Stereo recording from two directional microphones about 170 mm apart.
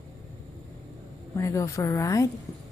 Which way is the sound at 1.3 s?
20° left (ahead or behind).